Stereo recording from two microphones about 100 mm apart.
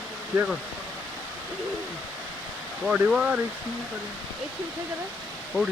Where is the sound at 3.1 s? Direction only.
10° right (ahead or behind).